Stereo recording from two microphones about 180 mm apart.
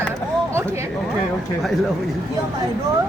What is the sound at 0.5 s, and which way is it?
Speech, 15° right (ahead or behind).